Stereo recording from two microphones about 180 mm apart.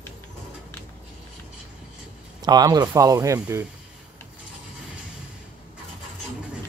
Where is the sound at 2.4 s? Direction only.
20° right (ahead or behind).